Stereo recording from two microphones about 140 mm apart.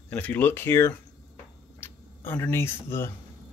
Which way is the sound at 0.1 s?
15° left (ahead or behind).